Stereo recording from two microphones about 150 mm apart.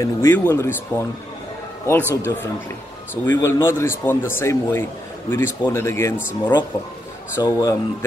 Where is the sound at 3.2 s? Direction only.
15° left (ahead or behind).